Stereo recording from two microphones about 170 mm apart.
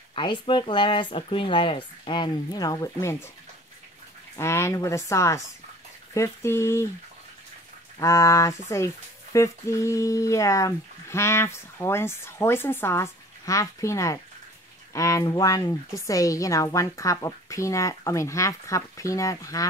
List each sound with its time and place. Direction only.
0.1 s speech: 30° left (ahead or behind)
4.4 s speech: 15° left (ahead or behind)
8.0 s speech: 15° left (ahead or behind)